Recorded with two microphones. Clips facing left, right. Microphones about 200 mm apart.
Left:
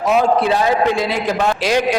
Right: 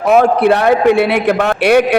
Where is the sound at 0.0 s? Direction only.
60° right (ahead or behind).